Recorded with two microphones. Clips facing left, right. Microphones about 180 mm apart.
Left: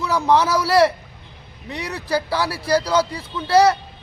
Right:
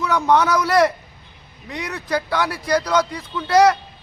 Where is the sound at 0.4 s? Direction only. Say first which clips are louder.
Right 1 dB; 30° left (ahead or behind).